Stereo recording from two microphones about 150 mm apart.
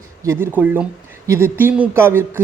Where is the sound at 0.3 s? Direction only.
15° right (ahead or behind).